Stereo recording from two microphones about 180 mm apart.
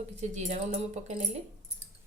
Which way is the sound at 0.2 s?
40° right (ahead or behind).